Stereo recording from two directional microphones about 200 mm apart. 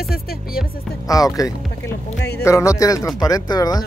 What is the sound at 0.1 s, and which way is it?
Speech, 50° left (ahead or behind).